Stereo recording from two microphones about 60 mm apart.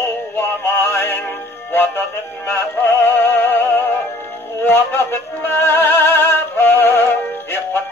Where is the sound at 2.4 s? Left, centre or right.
Left.